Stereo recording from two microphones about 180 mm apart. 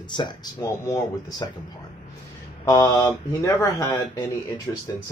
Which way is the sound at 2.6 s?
15° left (ahead or behind).